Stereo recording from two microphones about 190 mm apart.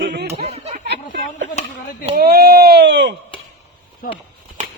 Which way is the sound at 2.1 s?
55° right (ahead or behind).